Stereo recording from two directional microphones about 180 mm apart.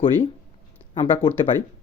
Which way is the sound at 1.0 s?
25° left (ahead or behind).